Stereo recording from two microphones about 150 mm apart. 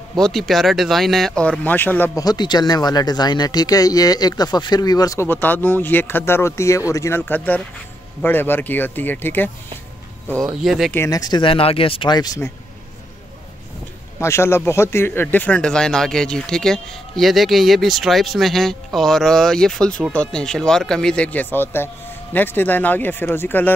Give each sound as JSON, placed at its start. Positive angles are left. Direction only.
{"t": 0.2, "sound": "speech", "side_deg": 0}
{"t": 2.1, "sound": "speech", "side_deg": 25}
{"t": 10.5, "sound": "speech", "side_deg": 0}
{"t": 11.0, "sound": "speech", "side_deg": 25}
{"t": 14.2, "sound": "speech", "side_deg": 15}